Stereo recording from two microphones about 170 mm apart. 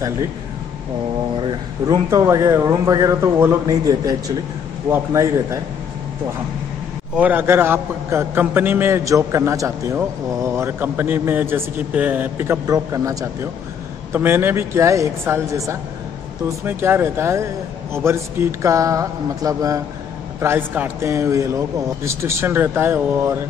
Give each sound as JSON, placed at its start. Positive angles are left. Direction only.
{"t": 1.4, "sound": "a man's voice", "side_deg": -30}
{"t": 7.2, "sound": "a man's voice", "side_deg": -10}